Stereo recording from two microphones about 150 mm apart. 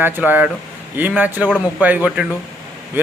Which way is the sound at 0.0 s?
10° right (ahead or behind).